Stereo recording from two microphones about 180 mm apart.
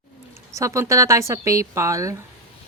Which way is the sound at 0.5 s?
15° right (ahead or behind).